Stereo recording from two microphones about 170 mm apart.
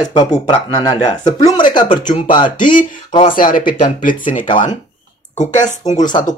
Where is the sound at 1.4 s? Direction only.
25° left (ahead or behind).